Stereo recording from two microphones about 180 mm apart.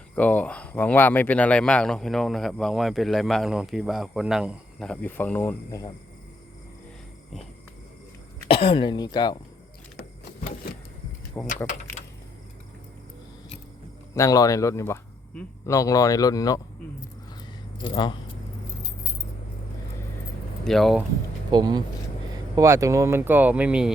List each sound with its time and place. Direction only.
0.2 s speech: 10° left (ahead or behind)
8.4 s a man's voice: 30° left (ahead or behind)
10.0 s a sound: 55° left (ahead or behind)
11.4 s speech: 45° left (ahead or behind)
14.1 s a man's voice: 20° left (ahead or behind)
17.8 s a man's voice: 25° left (ahead or behind)
20.7 s speech: centre (ahead or behind)
21.5 s speech: 25° right (ahead or behind); by 23.9 s 5° right (ahead or behind)